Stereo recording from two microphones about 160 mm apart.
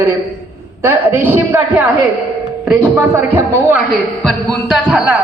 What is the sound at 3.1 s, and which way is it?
Speech, 15° right (ahead or behind).